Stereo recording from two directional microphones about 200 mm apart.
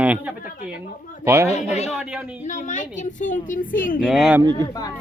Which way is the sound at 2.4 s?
40° left (ahead or behind).